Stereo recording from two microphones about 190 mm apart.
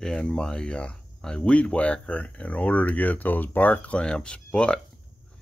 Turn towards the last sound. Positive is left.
turn(degrees=5)  # may be behind; listen again after turning